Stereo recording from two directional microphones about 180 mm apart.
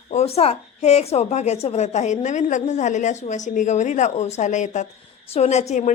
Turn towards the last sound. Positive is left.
turn(degrees=40)  # may be behind; listen again after turning